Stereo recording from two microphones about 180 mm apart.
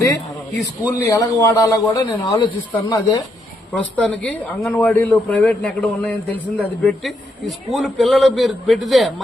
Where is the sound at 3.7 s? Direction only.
10° left (ahead or behind).